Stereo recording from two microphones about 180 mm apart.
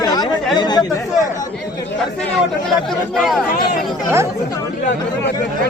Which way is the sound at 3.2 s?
Centre (ahead or behind).